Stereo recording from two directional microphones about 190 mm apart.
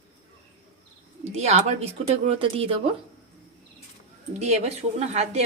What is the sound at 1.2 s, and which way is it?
Speech, 35° right (ahead or behind).